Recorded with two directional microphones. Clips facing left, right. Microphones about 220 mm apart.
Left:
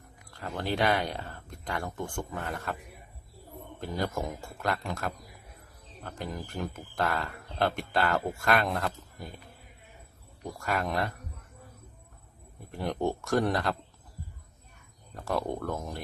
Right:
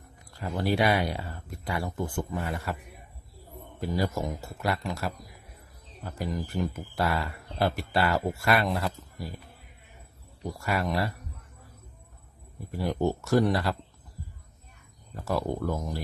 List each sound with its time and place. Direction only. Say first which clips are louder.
0.3 s speech: right 4 dB; 10° right (ahead or behind)
3.8 s speech: right 3 dB; 5° right (ahead or behind)
10.4 s speech: right 2 dB; 10° right (ahead or behind)
12.7 s speech: right 3 dB; 5° right (ahead or behind)
15.1 s speech: right 2 dB; 5° right (ahead or behind)